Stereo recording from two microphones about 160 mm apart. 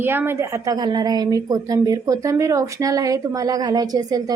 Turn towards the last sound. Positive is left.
turn(degrees=-25)  # may be behind; listen again after turning